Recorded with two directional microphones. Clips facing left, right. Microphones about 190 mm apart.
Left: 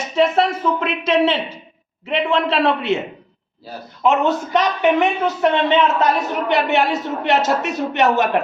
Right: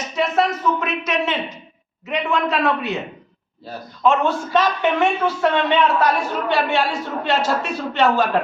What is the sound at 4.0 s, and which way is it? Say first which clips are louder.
A man's voice: left 1 dB; 20° left (ahead or behind).